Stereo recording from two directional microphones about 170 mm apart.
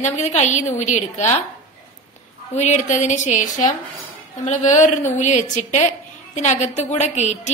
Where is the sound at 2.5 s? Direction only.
45° left (ahead or behind).